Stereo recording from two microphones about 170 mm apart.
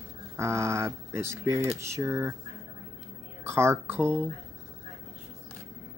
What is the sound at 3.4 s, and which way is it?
Speech, 15° right (ahead or behind).